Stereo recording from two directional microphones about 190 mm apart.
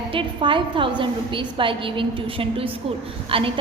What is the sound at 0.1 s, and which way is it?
A woman's voice, 25° right (ahead or behind).